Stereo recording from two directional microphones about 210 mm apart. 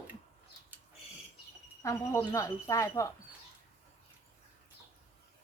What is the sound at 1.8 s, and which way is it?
A woman's voice, 15° left (ahead or behind).